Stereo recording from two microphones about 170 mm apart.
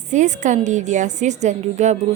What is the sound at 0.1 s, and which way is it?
A woman's voice, 45° right (ahead or behind).